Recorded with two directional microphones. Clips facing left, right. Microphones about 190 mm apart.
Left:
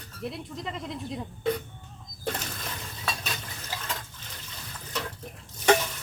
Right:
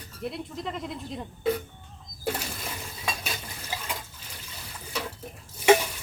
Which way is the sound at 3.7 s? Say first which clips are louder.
Even; 10° right (ahead or behind).